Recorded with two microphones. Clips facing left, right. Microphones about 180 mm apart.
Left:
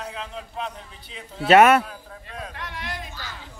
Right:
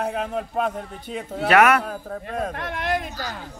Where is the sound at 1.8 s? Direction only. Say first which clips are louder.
Right 10 dB; 50° right (ahead or behind).